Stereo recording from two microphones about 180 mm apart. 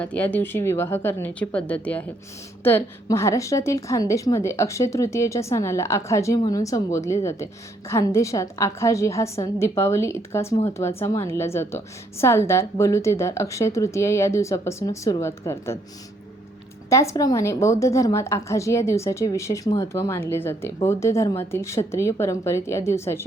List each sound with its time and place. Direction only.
0.0 s a woman's voice: 10° left (ahead or behind)
16.9 s a woman's voice: 15° left (ahead or behind)